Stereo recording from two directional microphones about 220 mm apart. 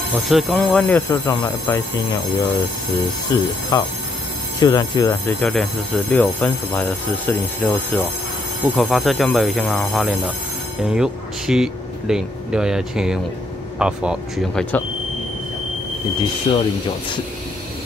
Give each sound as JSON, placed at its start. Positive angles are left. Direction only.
{"t": 0.1, "sound": "speech", "side_deg": 0}
{"t": 3.3, "sound": "speech", "side_deg": 15}
{"t": 16.5, "sound": "speech", "side_deg": 20}